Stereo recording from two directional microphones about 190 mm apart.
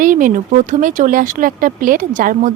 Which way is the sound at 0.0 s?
45° right (ahead or behind).